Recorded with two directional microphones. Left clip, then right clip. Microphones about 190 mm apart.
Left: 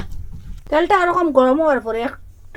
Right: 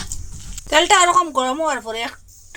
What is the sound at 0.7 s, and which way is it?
Speech, 25° left (ahead or behind).